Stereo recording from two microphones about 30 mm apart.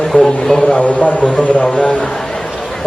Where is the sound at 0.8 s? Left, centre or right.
Left.